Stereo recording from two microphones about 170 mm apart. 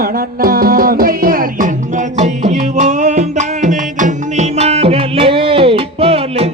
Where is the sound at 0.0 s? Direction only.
60° right (ahead or behind).